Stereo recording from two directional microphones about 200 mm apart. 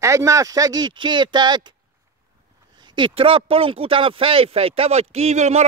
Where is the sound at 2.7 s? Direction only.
20° right (ahead or behind).